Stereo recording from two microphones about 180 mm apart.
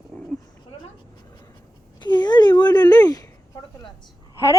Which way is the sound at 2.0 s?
25° left (ahead or behind).